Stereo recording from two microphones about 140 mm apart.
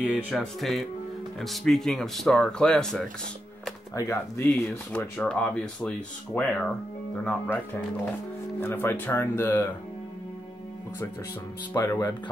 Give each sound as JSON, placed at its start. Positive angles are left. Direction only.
{"t": 0.0, "sound": "speech", "side_deg": -10}
{"t": 0.3, "sound": "speech", "side_deg": 0}
{"t": 3.9, "sound": "speech", "side_deg": 20}
{"t": 4.5, "sound": "speech", "side_deg": 5}
{"t": 11.7, "sound": "speech", "side_deg": 25}